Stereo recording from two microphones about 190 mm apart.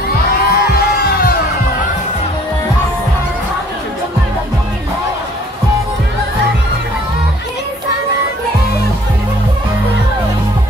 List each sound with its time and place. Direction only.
0.4 s music: 55° left (ahead or behind)